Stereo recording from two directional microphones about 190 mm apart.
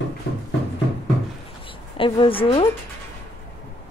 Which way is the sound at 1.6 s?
25° left (ahead or behind).